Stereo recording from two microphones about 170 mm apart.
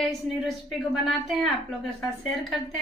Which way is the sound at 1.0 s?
Centre (ahead or behind).